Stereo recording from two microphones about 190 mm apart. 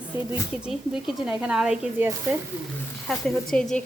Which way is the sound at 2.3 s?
10° right (ahead or behind).